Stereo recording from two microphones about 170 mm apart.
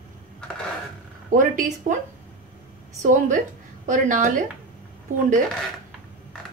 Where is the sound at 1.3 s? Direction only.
50° right (ahead or behind).